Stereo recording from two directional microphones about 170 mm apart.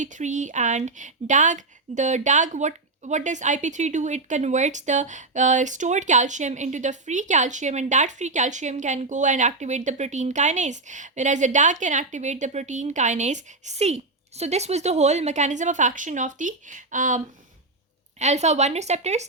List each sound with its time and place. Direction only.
0.0 s speech: 45° right (ahead or behind)